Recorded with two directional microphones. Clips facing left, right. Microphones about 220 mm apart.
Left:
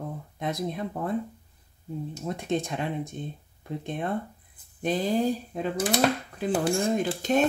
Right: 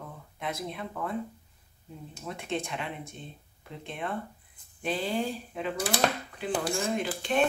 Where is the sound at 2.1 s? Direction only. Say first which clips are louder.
Left 5 dB; 35° left (ahead or behind).